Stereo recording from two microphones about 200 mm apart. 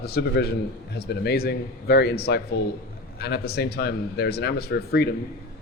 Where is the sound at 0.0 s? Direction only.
55° left (ahead or behind).